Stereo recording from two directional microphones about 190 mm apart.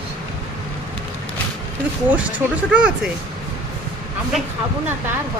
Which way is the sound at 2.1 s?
10° right (ahead or behind).